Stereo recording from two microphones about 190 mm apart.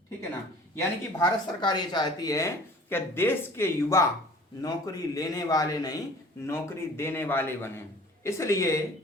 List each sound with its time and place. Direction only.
0.8 s a man's voice: 20° left (ahead or behind)